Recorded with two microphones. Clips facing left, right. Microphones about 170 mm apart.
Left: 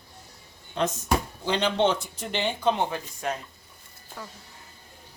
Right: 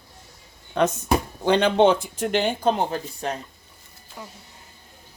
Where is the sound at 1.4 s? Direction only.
55° right (ahead or behind); by 3.4 s 35° right (ahead or behind).